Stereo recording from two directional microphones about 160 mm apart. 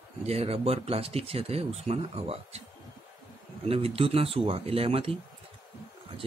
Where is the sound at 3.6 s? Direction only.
35° right (ahead or behind).